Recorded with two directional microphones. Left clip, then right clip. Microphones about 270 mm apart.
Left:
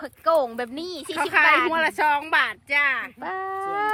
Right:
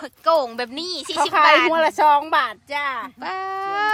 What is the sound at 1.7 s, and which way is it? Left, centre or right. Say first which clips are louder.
Speech: right 5 dB; right.